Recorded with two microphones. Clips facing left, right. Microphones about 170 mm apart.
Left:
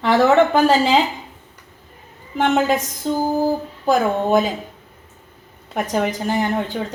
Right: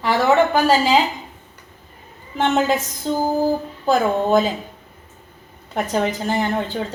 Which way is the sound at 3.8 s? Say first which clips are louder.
Even; 15° left (ahead or behind).